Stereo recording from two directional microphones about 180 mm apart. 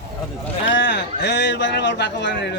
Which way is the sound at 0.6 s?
90° left.